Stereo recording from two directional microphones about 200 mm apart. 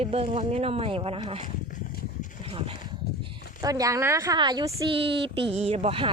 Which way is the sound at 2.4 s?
25° right (ahead or behind).